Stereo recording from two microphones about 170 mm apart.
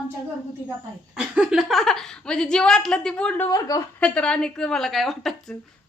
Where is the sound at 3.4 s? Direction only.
20° left (ahead or behind).